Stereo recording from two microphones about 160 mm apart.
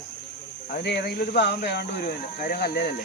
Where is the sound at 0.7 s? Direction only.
85° left.